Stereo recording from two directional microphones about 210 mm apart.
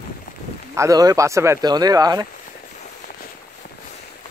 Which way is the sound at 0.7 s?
15° right (ahead or behind).